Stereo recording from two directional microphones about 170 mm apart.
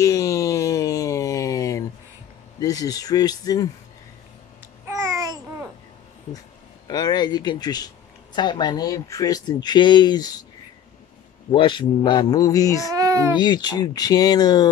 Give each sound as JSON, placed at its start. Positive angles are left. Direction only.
{"t": 0.0, "sound": "a sound", "side_deg": 20}
{"t": 2.6, "sound": "speech", "side_deg": 20}
{"t": 4.8, "sound": "babbling", "side_deg": -20}
{"t": 6.9, "sound": "speech", "side_deg": 25}
{"t": 11.5, "sound": "speech", "side_deg": 30}
{"t": 12.9, "sound": "a child's voice", "side_deg": -20}
{"t": 13.4, "sound": "speech", "side_deg": 25}